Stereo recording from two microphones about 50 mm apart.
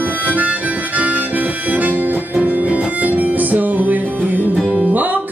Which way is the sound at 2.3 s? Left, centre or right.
Right.